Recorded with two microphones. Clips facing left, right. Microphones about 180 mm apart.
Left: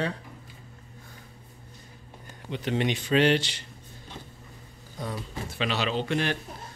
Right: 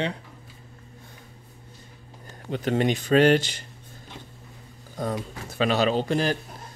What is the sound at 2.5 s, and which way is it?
Speech, 45° right (ahead or behind).